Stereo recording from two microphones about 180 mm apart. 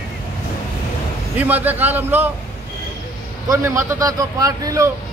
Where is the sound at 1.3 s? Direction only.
10° right (ahead or behind).